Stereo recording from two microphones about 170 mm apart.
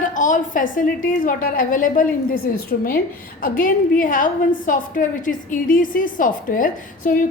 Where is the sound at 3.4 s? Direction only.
55° left (ahead or behind).